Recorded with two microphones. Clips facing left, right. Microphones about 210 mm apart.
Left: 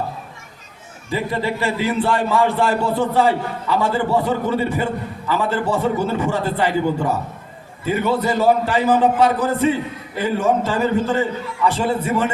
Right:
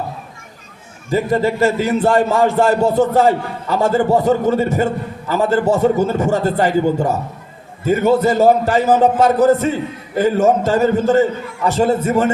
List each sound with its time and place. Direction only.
1.1 s a man's voice: 45° right (ahead or behind)